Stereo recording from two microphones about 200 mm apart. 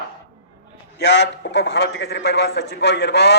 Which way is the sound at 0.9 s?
60° left (ahead or behind).